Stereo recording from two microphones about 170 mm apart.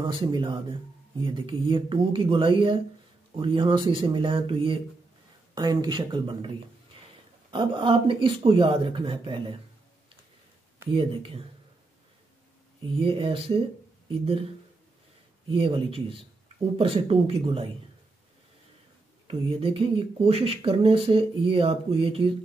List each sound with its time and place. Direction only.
0.0 s speech: 25° right (ahead or behind)
7.5 s speech: 30° right (ahead or behind)
10.9 s speech: 35° right (ahead or behind)
12.8 s speech: 35° right (ahead or behind)
15.4 s speech: 30° right (ahead or behind)
19.2 s speech: 35° right (ahead or behind)